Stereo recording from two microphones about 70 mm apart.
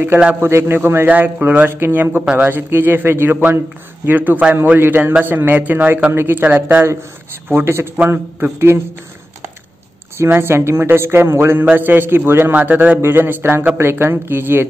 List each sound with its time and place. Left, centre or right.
0.4 s speech: right
4.7 s speech: right
10.1 s speech: right
12.5 s speech: right